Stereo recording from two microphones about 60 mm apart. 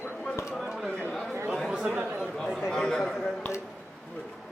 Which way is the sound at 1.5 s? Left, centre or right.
Centre.